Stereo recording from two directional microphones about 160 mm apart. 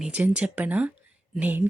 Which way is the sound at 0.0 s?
10° right (ahead or behind).